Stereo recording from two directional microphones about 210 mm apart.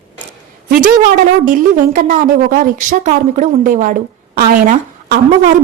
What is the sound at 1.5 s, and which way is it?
A woman's voice, 40° right (ahead or behind).